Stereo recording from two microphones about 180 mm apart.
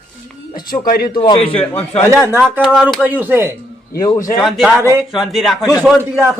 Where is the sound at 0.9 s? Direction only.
55° left (ahead or behind).